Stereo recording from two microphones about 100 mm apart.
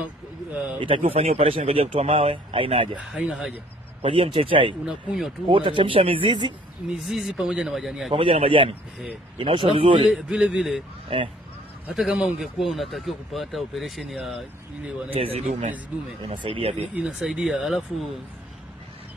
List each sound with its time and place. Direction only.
0.7 s speech: 65° right (ahead or behind)
3.0 s speech: 5° right (ahead or behind)
4.0 s speech: 60° right (ahead or behind)
4.8 s speech: centre (ahead or behind)
5.5 s speech: 55° right (ahead or behind)
6.9 s speech: 5° right (ahead or behind)
8.1 s speech: 60° right (ahead or behind)
10.1 s speech: 5° right (ahead or behind)
11.9 s speech: 5° right (ahead or behind)
15.1 s speech: 85° right
16.9 s speech: 10° right (ahead or behind)